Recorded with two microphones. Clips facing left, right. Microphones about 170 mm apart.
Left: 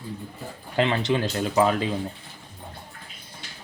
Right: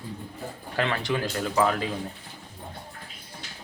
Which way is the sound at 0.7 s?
20° left (ahead or behind).